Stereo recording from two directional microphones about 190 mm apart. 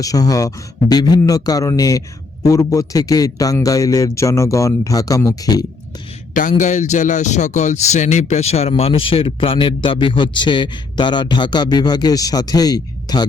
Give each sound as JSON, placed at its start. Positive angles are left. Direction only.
{"t": 0.0, "sound": "a man's voice", "side_deg": 20}
{"t": 6.3, "sound": "speech", "side_deg": 45}